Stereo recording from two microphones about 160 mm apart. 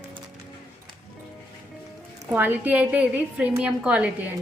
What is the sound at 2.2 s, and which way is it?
A woman's voice, 10° right (ahead or behind).